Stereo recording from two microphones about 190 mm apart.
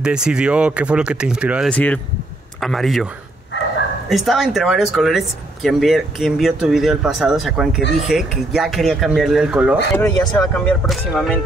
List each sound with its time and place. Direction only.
0.0 s speech: 5° right (ahead or behind)
1.7 s speech: 5° left (ahead or behind)
4.1 s speech: centre (ahead or behind)
9.9 s speech: 20° left (ahead or behind)
10.3 s speech: 5° left (ahead or behind)